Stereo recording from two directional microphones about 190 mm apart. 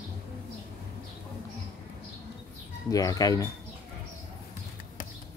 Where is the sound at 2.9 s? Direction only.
20° left (ahead or behind).